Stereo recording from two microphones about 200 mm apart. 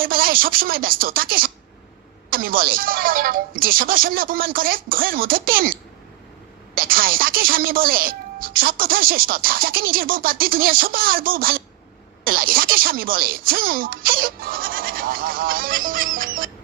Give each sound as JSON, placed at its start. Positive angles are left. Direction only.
{"t": 0.0, "sound": "speech", "side_deg": -45}
{"t": 6.7, "sound": "speech", "side_deg": -45}